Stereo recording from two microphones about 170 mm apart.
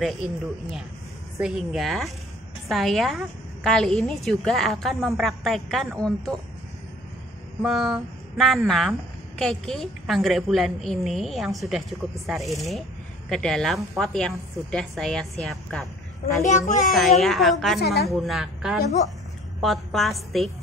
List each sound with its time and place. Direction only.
1.4 s a woman's voice: centre (ahead or behind)
7.6 s a woman's voice: centre (ahead or behind)
16.4 s a child's voice: 45° left (ahead or behind)
16.9 s a woman's voice: centre (ahead or behind)